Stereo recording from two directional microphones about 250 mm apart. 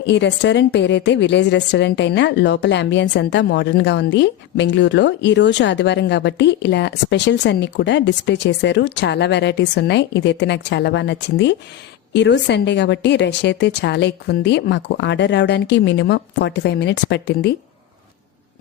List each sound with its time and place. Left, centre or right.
0.0 s a woman's voice: left